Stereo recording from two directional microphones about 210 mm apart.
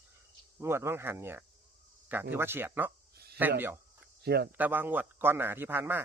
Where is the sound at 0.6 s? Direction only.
10° right (ahead or behind).